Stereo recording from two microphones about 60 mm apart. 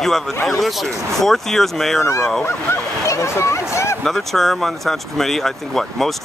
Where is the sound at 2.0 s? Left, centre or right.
Left.